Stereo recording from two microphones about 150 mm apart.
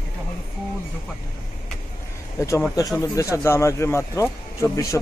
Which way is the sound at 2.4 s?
20° left (ahead or behind).